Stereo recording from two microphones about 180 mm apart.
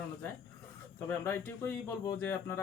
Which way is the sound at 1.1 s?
15° left (ahead or behind).